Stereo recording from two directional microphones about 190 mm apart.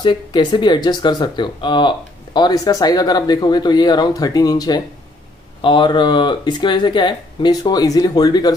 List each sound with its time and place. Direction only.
0.0 s speech: 25° left (ahead or behind)